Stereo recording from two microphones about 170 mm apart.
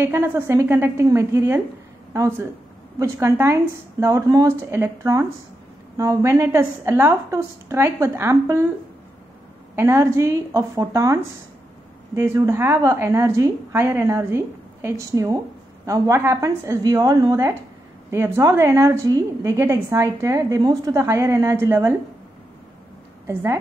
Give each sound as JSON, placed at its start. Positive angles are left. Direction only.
{"t": 0.0, "sound": "a woman's voice", "side_deg": -15}
{"t": 9.8, "sound": "a woman's voice", "side_deg": -15}
{"t": 23.2, "sound": "a woman's voice", "side_deg": -15}